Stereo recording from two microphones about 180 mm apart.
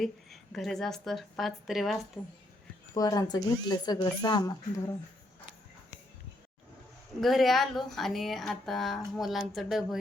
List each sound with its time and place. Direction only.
0.0 s speech: centre (ahead or behind)
2.9 s speech: 20° left (ahead or behind)
7.2 s speech: centre (ahead or behind)